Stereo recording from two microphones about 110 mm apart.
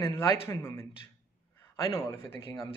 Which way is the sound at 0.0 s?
35° left (ahead or behind).